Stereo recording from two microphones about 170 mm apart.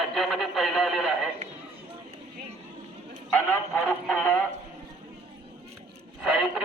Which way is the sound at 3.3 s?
Centre (ahead or behind).